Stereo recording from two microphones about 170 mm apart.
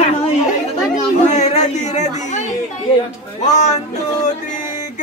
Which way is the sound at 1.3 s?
40° left (ahead or behind).